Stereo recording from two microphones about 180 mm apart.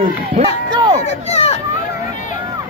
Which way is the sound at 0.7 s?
25° right (ahead or behind).